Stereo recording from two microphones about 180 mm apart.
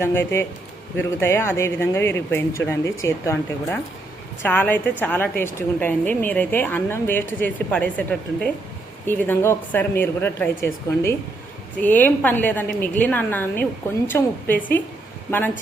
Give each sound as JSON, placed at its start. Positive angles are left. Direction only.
{"t": 0.0, "sound": "a woman's voice", "side_deg": 15}